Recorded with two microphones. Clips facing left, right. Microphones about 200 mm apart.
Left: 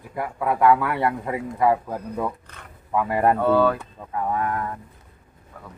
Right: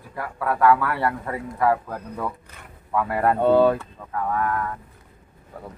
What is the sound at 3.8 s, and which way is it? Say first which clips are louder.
Speech: even; 15° left (ahead or behind).